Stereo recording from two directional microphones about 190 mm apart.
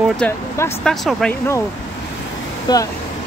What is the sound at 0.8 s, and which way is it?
Speech, centre (ahead or behind).